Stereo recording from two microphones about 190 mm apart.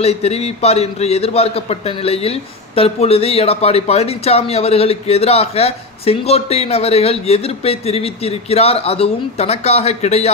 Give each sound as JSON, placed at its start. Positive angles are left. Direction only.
{"t": 0.0, "sound": "a man's voice", "side_deg": 35}